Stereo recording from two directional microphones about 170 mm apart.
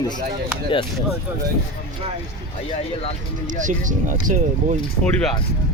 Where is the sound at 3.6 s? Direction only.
50° right (ahead or behind).